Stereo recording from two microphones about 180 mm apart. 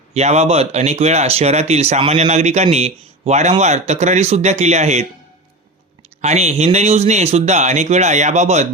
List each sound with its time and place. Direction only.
0.1 s speech: 35° right (ahead or behind)
6.2 s speech: 40° right (ahead or behind)